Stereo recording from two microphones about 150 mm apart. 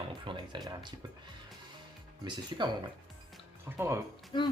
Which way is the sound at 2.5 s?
25° right (ahead or behind).